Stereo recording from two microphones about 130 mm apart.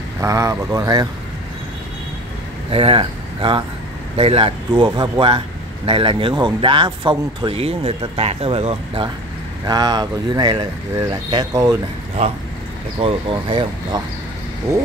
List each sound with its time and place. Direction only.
0.2 s speech: 25° right (ahead or behind)
2.7 s speech: 45° right (ahead or behind)
9.7 s speech: 30° right (ahead or behind)
13.0 s speech: 40° right (ahead or behind)